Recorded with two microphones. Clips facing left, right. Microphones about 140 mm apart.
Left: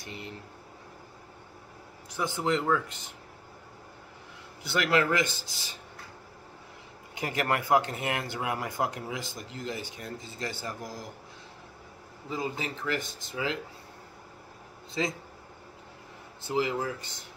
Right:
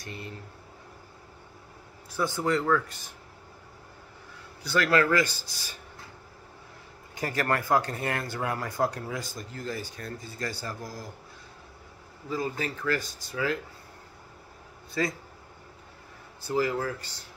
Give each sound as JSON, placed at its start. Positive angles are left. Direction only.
{"t": 0.0, "sound": "speech", "side_deg": 20}
{"t": 2.1, "sound": "speech", "side_deg": 20}
{"t": 4.6, "sound": "speech", "side_deg": 20}
{"t": 7.2, "sound": "speech", "side_deg": 20}
{"t": 12.3, "sound": "speech", "side_deg": 20}
{"t": 15.0, "sound": "speech", "side_deg": 20}
{"t": 16.4, "sound": "speech", "side_deg": 20}